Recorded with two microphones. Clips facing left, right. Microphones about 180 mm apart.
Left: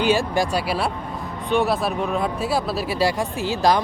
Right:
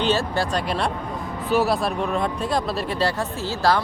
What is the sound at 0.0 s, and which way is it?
Speech, 10° left (ahead or behind).